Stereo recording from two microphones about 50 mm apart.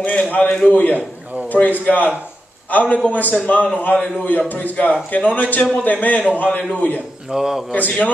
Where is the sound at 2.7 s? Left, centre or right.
Left.